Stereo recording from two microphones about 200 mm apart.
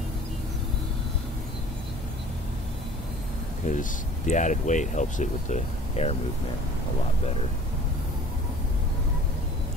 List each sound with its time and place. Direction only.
3.6 s speech: 40° left (ahead or behind)